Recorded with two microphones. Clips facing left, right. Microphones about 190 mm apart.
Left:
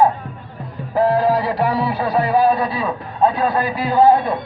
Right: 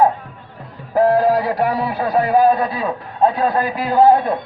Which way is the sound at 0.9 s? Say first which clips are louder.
Right 2 dB; 50° right (ahead or behind).